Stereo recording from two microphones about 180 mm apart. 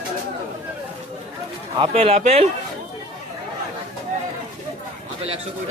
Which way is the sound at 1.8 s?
30° right (ahead or behind).